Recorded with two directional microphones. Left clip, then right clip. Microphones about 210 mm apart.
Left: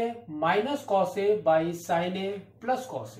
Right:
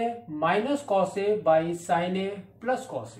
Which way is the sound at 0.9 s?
25° right (ahead or behind).